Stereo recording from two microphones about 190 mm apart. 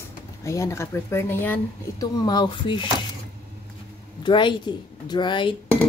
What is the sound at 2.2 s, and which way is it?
Speech, 20° left (ahead or behind).